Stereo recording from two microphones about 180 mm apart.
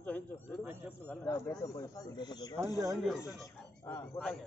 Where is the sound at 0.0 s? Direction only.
5° left (ahead or behind).